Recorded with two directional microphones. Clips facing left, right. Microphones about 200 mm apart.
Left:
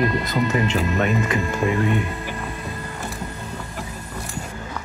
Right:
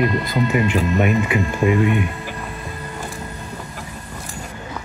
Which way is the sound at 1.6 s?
15° right (ahead or behind).